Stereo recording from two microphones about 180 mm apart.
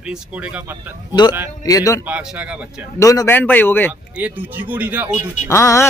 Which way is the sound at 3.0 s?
15° left (ahead or behind).